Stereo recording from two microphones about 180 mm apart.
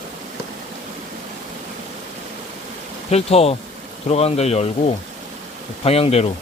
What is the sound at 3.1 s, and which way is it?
Speech, 35° left (ahead or behind).